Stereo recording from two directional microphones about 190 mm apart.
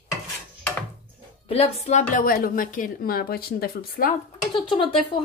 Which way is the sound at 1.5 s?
35° left (ahead or behind).